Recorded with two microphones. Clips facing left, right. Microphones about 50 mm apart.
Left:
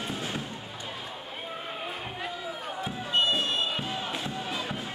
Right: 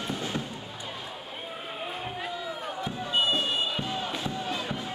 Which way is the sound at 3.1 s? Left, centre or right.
Centre.